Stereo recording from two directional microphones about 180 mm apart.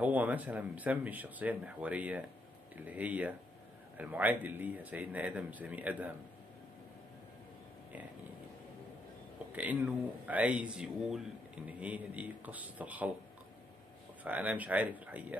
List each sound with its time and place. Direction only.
0.0 s speech: 10° right (ahead or behind)
9.6 s speech: 10° right (ahead or behind)
14.2 s speech: 10° right (ahead or behind)